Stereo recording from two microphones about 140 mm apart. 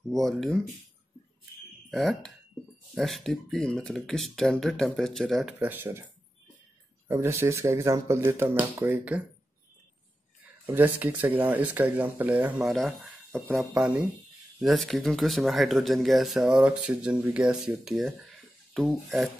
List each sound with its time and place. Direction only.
0.1 s speech: centre (ahead or behind)
1.9 s speech: centre (ahead or behind)
7.1 s speech: 20° right (ahead or behind)
10.7 s speech: 15° right (ahead or behind)
12.6 s speech: centre (ahead or behind)
13.7 s speech: 10° right (ahead or behind)
14.6 s speech: centre (ahead or behind)